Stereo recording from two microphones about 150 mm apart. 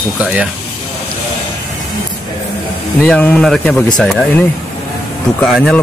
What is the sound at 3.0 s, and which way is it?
Speech, 10° left (ahead or behind).